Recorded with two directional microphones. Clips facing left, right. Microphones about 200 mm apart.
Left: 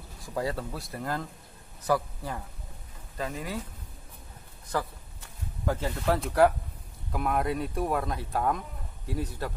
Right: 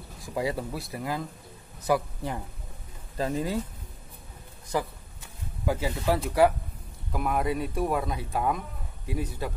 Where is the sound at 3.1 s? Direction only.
30° right (ahead or behind).